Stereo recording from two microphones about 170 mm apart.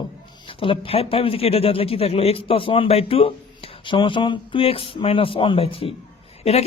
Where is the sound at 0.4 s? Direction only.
30° left (ahead or behind).